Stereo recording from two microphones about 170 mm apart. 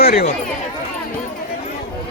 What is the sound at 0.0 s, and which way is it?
Speech, 65° left (ahead or behind).